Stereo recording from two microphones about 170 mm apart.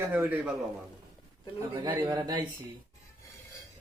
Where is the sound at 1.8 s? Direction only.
25° right (ahead or behind).